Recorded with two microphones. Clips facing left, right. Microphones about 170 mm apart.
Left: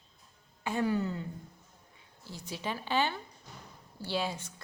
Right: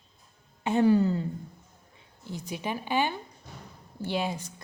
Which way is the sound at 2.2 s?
20° right (ahead or behind).